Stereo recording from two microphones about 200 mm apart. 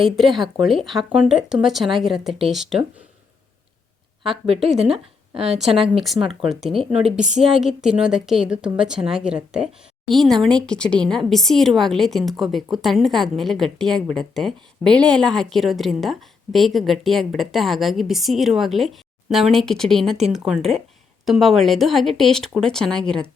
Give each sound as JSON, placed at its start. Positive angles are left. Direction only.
{"t": 0.2, "sound": "speech", "side_deg": 0}
{"t": 4.2, "sound": "speech", "side_deg": -30}
{"t": 4.7, "sound": "speech", "side_deg": 0}
{"t": 5.3, "sound": "a woman's voice", "side_deg": -30}
{"t": 6.0, "sound": "speech", "side_deg": 0}